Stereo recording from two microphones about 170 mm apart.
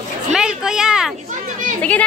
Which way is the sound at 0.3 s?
5° right (ahead or behind).